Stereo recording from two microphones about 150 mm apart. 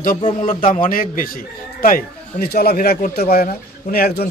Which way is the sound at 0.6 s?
60° left (ahead or behind).